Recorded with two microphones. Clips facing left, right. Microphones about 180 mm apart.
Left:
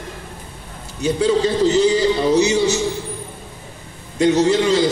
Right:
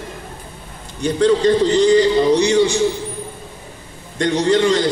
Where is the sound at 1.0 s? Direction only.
10° left (ahead or behind).